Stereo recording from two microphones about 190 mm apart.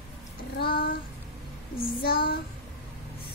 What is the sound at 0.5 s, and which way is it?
Child singing, 50° left (ahead or behind).